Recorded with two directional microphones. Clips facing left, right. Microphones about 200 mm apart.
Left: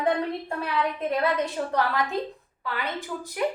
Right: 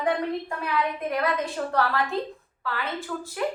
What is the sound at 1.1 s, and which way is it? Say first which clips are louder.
A woman's voice: left 1 dB; 20° left (ahead or behind).